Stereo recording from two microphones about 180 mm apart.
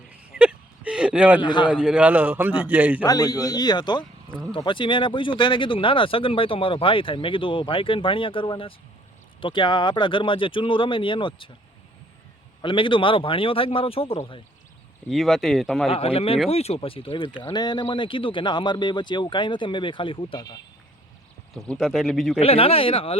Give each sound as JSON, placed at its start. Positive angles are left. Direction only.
{"t": 0.3, "sound": "whimper", "side_deg": -5}
{"t": 1.4, "sound": "speech", "side_deg": 25}
{"t": 1.7, "sound": "a man's voice", "side_deg": -5}
{"t": 3.0, "sound": "speech", "side_deg": 20}
{"t": 12.6, "sound": "speech", "side_deg": 30}
{"t": 15.1, "sound": "speech", "side_deg": 0}
{"t": 15.9, "sound": "speech", "side_deg": 35}
{"t": 21.7, "sound": "speech", "side_deg": 0}
{"t": 22.4, "sound": "speech", "side_deg": 35}